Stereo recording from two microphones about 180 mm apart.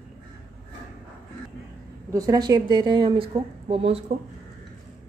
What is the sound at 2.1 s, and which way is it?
A woman's voice, 20° right (ahead or behind).